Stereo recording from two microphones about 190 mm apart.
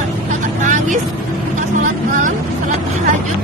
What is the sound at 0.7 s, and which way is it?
Vehicle, 40° right (ahead or behind).